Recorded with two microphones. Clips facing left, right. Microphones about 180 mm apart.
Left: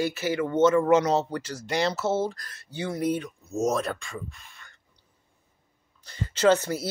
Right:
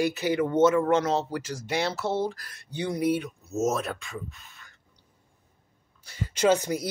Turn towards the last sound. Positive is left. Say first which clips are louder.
# left 1 dB
turn(degrees=-15)  # may be behind; listen again after turning